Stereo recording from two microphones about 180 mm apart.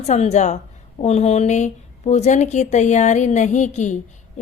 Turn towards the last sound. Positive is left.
turn(degrees=40)  # may be behind; listen again after turning